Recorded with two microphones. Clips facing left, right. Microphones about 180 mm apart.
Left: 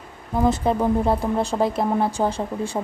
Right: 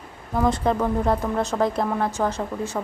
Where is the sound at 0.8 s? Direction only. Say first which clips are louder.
Left 2 dB; 25° left (ahead or behind).